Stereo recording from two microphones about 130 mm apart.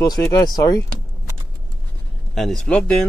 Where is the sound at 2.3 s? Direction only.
Centre (ahead or behind).